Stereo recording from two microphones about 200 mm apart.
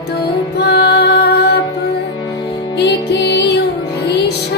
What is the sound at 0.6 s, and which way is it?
Music, 55° left (ahead or behind).